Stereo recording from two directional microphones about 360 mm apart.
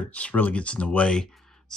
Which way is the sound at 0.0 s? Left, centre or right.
Centre.